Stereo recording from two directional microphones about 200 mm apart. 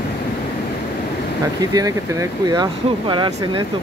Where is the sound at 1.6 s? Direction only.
20° right (ahead or behind).